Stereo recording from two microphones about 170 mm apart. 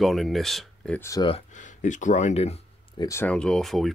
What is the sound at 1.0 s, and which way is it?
Speech, 20° left (ahead or behind).